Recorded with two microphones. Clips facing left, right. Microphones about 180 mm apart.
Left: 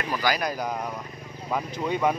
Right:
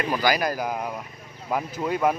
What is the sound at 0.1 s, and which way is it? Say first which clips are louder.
Speech: right 1 dB; 5° right (ahead or behind).